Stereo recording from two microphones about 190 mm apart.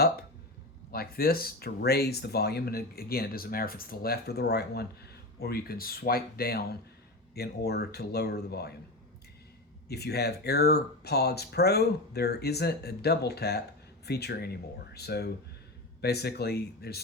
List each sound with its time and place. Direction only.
0.9 s speech: 50° left (ahead or behind)
9.9 s speech: 60° left (ahead or behind)